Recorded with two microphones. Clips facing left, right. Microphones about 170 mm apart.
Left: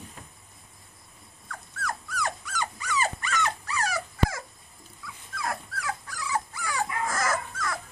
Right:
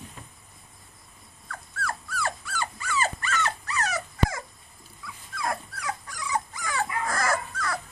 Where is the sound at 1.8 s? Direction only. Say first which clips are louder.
Even; 20° left (ahead or behind).